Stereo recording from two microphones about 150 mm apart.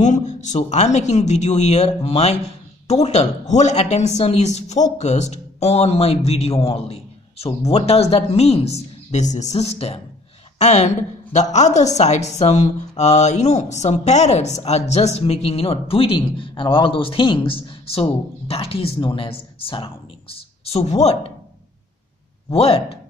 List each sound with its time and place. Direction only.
0.0 s a woman's voice: 50° left (ahead or behind)
22.5 s speech: 40° left (ahead or behind)